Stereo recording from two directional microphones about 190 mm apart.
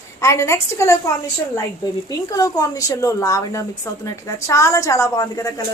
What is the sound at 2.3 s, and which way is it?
A woman's voice, 15° left (ahead or behind).